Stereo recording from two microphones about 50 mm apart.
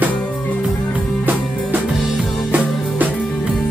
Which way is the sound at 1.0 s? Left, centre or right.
Right.